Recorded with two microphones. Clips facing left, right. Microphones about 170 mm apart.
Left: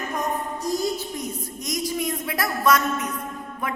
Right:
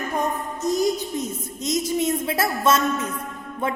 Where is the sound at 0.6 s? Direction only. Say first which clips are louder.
Right 5 dB; 20° right (ahead or behind).